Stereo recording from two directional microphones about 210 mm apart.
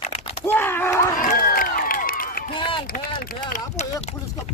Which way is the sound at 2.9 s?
45° left (ahead or behind).